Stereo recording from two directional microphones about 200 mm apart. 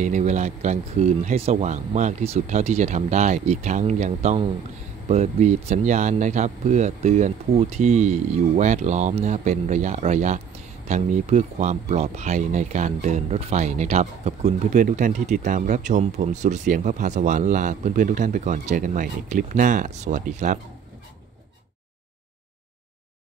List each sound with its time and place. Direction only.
0.0 s speech: 35° right (ahead or behind)